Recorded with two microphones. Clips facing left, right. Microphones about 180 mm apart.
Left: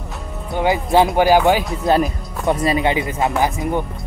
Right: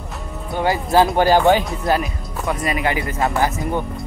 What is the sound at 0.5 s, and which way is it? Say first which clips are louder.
Speech: left 2 dB; 20° left (ahead or behind).